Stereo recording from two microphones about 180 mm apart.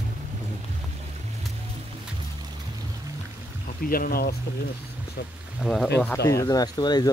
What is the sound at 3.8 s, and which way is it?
Speech, 55° left (ahead or behind).